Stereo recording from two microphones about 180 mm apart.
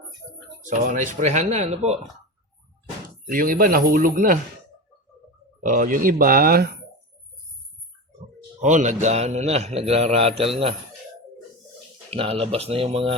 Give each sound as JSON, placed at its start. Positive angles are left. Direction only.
{"t": 0.6, "sound": "a man's voice", "side_deg": -45}
{"t": 3.2, "sound": "speech", "side_deg": -50}
{"t": 5.5, "sound": "speech", "side_deg": -45}
{"t": 8.6, "sound": "a man's voice", "side_deg": -40}
{"t": 12.1, "sound": "a man's voice", "side_deg": -35}